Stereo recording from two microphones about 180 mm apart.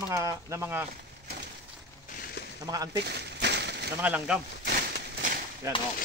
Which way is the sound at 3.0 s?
70° right (ahead or behind).